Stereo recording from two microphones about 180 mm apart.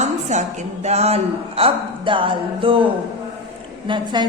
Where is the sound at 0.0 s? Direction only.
40° right (ahead or behind).